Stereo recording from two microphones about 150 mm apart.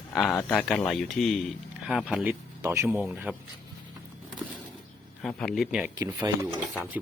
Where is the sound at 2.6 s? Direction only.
15° right (ahead or behind).